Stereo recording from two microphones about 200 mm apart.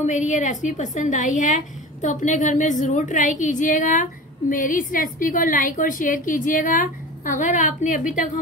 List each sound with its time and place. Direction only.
0.0 s a woman's voice: 40° left (ahead or behind)